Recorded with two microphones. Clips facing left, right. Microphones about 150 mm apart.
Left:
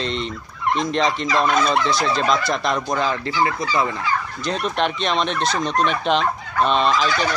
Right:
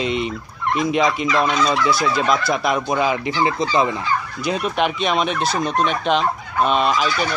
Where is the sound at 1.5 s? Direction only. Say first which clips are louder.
Left 1 dB; 55° left (ahead or behind).